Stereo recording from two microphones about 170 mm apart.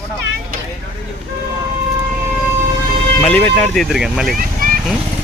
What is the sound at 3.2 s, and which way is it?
Speech, 10° left (ahead or behind).